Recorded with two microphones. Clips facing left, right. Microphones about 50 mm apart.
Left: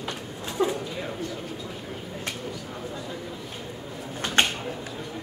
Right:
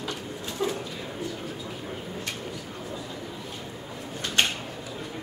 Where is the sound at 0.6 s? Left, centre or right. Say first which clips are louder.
Left 4 dB; centre.